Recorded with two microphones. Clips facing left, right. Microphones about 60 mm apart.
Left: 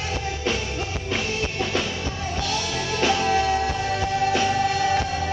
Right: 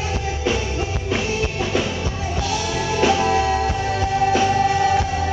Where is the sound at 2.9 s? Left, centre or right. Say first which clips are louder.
Right 3 dB; centre.